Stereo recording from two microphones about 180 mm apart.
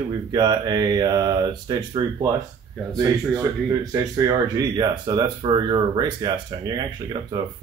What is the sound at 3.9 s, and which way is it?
Speech, 20° right (ahead or behind).